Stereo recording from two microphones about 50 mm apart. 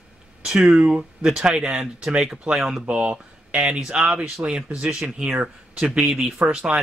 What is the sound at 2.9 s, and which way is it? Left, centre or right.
Speech, right.